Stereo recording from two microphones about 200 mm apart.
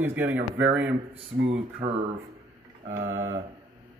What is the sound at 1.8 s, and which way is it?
Speech, 30° right (ahead or behind).